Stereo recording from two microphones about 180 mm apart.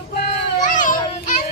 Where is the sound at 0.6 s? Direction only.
45° left (ahead or behind).